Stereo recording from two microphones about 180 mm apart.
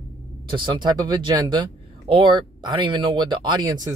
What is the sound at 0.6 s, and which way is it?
Speech, 25° right (ahead or behind).